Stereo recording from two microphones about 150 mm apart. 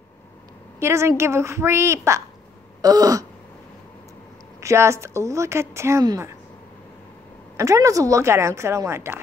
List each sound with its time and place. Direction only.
0.7 s a woman's voice: 15° right (ahead or behind)
4.6 s speech: 20° right (ahead or behind)
7.5 s speech: 20° right (ahead or behind)